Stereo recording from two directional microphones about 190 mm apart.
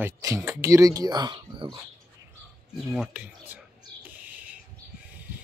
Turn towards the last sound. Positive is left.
turn(degrees=-5)  # may be behind; listen again after turning